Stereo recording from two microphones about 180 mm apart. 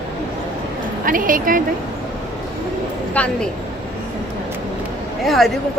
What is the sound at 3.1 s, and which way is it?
Speech, 5° left (ahead or behind).